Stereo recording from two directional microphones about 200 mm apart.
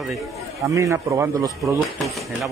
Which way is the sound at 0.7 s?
15° right (ahead or behind).